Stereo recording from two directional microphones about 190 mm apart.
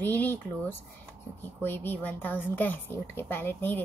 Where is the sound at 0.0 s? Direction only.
10° left (ahead or behind).